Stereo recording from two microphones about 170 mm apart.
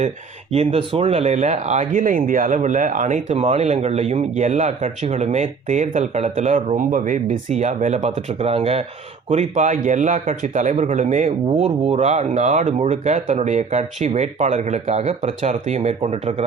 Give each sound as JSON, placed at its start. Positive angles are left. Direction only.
{"t": 0.5, "sound": "speech", "side_deg": -35}